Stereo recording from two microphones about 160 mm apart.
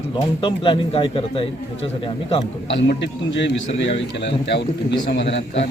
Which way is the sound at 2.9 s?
90° left.